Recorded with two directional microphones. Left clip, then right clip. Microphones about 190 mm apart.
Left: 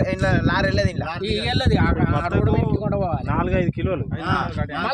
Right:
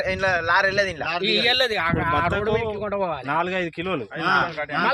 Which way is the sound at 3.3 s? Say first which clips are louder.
Even; 60° right (ahead or behind).